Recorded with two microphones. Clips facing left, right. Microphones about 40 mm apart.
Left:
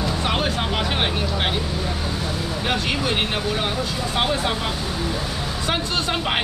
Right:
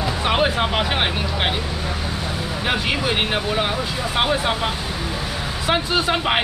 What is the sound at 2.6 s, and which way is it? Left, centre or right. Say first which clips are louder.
Speech: right 2 dB; centre.